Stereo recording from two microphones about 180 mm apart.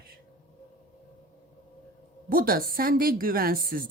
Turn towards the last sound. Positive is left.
turn(degrees=-55)  # may be behind; listen again after turning